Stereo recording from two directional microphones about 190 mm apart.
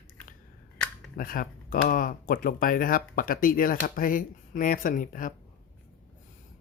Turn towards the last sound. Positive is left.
turn(degrees=45)  # may be behind; listen again after turning